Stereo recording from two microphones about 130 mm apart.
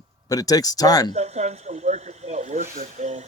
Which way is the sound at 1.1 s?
60° right (ahead or behind).